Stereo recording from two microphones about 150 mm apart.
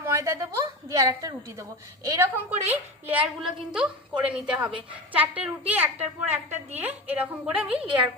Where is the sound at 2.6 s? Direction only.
40° right (ahead or behind).